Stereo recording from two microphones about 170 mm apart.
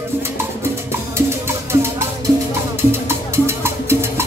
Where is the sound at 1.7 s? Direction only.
15° right (ahead or behind).